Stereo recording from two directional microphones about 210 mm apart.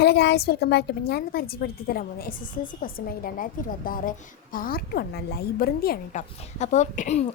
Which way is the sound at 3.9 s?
40° left (ahead or behind).